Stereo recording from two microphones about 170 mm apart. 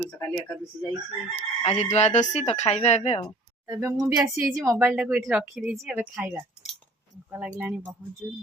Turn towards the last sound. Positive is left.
turn(degrees=-5)  # may be behind; listen again after turning